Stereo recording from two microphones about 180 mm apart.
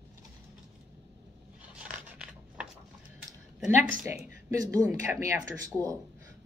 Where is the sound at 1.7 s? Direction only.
5° right (ahead or behind).